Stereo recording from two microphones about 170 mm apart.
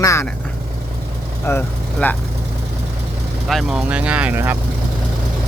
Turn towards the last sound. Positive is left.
turn(degrees=-10)  # may be behind; listen again after turning